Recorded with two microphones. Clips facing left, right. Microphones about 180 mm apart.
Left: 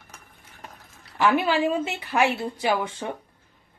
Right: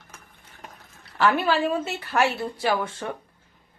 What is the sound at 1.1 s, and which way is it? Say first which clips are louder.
Speech: even; 15° left (ahead or behind).